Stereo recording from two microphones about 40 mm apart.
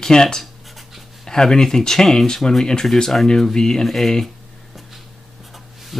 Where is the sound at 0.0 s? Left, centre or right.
Centre.